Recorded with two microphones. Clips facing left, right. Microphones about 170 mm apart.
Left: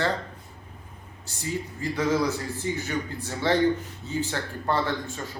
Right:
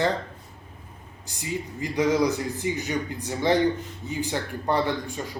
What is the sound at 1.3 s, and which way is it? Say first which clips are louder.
A man's voice: even; 15° right (ahead or behind).